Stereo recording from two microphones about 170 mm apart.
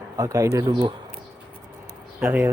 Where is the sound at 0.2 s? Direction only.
20° right (ahead or behind).